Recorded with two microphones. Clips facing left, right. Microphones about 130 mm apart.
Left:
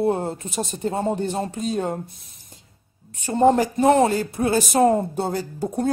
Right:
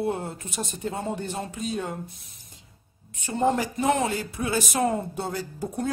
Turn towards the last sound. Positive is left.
turn(degrees=35)  # may be behind; listen again after turning